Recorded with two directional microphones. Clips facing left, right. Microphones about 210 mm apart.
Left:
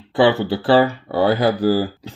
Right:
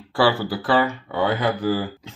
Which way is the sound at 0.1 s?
20° left (ahead or behind).